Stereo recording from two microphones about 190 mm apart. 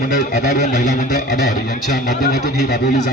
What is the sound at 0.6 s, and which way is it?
Speech, 40° left (ahead or behind).